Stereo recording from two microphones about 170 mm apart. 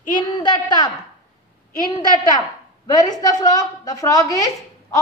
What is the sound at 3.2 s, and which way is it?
A woman's voice, 20° left (ahead or behind).